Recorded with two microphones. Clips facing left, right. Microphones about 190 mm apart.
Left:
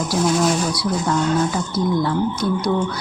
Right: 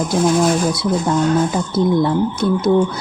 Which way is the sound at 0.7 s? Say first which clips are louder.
Right 3 dB; 25° right (ahead or behind).